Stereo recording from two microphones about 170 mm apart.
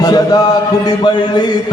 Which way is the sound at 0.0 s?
25° left (ahead or behind).